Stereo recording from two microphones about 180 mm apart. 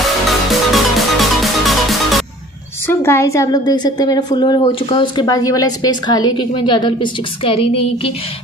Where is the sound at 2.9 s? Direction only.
15° left (ahead or behind).